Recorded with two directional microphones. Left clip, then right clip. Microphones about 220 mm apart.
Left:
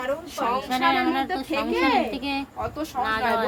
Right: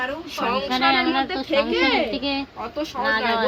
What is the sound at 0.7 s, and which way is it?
Speech, 5° right (ahead or behind).